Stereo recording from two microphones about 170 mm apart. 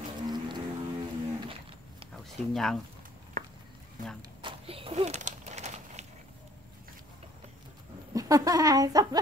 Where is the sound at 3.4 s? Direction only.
50° right (ahead or behind).